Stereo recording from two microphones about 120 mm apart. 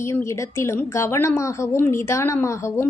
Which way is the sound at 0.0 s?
25° left (ahead or behind).